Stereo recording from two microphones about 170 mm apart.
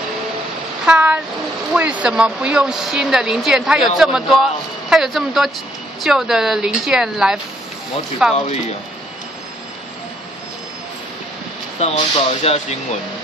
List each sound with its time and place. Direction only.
0.8 s train: 5° right (ahead or behind)
1.7 s speech: 5° right (ahead or behind)
11.8 s speech: 35° left (ahead or behind)